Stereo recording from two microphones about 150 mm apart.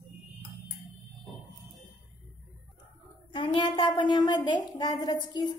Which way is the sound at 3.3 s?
35° left (ahead or behind).